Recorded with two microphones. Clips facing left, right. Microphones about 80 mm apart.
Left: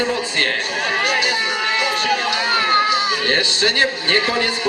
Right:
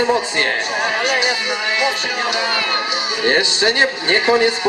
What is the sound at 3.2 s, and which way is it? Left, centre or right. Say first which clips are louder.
A man's voice: right 3 dB; centre.